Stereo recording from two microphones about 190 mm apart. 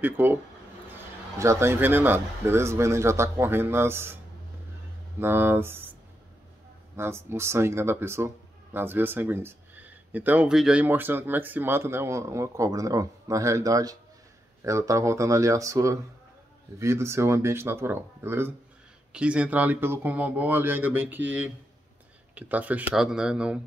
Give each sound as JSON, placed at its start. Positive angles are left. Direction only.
{"t": 0.0, "sound": "speech", "side_deg": -10}
{"t": 1.4, "sound": "speech", "side_deg": -15}
{"t": 5.2, "sound": "speech", "side_deg": -10}
{"t": 7.0, "sound": "speech", "side_deg": -15}
{"t": 22.3, "sound": "speech", "side_deg": -10}